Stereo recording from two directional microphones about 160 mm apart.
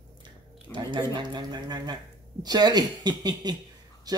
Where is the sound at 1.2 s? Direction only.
25° right (ahead or behind).